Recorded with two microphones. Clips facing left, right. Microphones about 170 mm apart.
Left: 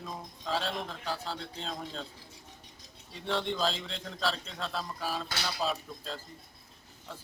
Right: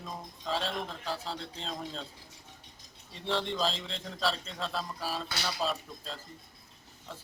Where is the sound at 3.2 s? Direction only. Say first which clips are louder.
Even; centre (ahead or behind).